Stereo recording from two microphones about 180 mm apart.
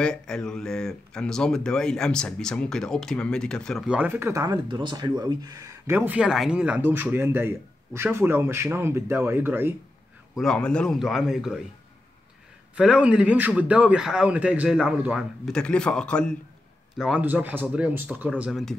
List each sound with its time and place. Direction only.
0.0 s speech: 5° left (ahead or behind); by 9.8 s 10° right (ahead or behind)
10.3 s a man's voice: 5° left (ahead or behind)
12.7 s a man's voice: 5° right (ahead or behind)